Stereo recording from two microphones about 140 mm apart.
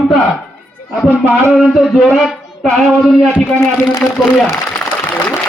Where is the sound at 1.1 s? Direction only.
15° right (ahead or behind).